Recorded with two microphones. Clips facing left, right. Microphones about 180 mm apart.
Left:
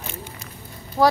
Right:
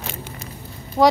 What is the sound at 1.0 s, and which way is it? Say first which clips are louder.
Speech: right 2 dB; 15° right (ahead or behind).